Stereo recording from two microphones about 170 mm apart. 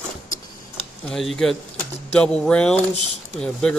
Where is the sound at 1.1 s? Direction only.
Centre (ahead or behind).